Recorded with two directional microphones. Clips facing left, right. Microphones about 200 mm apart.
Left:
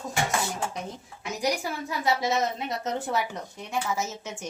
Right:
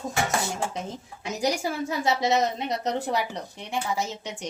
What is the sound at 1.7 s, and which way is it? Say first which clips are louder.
A woman's voice: right 2 dB; 25° right (ahead or behind).